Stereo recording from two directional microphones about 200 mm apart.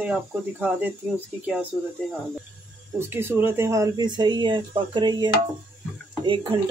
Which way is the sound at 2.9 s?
10° right (ahead or behind).